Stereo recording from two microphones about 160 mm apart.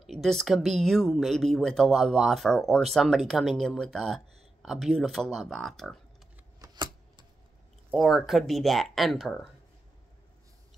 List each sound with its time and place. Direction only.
0.0 s speech: centre (ahead or behind)
6.6 s a sound: 25° right (ahead or behind)
7.9 s speech: centre (ahead or behind)